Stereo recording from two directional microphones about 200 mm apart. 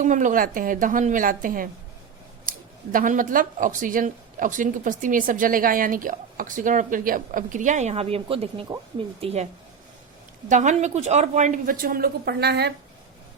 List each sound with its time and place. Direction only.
0.0 s speech: 40° right (ahead or behind)
10.5 s speech: 35° right (ahead or behind); by 12.7 s 55° right (ahead or behind)